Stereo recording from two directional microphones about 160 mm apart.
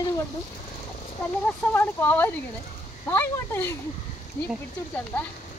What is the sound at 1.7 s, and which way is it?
Speech, 10° left (ahead or behind).